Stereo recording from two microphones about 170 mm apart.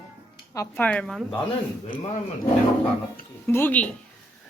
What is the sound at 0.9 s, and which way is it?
Speech, 5° left (ahead or behind).